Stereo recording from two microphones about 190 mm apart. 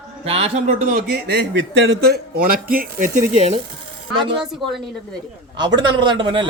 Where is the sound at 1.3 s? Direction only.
70° right (ahead or behind).